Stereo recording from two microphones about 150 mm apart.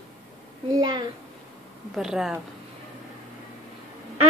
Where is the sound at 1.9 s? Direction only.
Centre (ahead or behind).